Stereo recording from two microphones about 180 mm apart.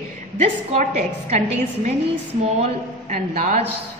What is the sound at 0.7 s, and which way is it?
A woman's voice, 40° right (ahead or behind).